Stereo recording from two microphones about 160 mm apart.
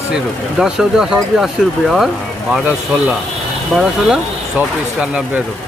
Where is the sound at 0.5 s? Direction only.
5° right (ahead or behind).